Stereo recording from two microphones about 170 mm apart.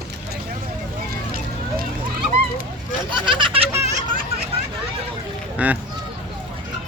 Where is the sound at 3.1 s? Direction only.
30° right (ahead or behind).